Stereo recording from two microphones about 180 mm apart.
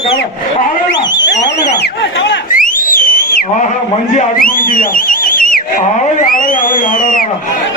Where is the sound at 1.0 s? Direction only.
80° left.